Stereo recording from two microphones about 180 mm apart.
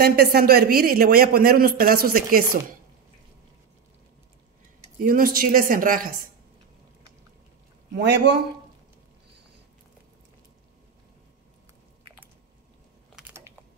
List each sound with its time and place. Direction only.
0.0 s speech: 55° right (ahead or behind)
5.0 s speech: 50° right (ahead or behind)
7.9 s a man's voice: 70° right (ahead or behind)